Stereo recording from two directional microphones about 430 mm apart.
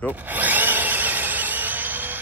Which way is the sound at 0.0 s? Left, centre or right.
Centre.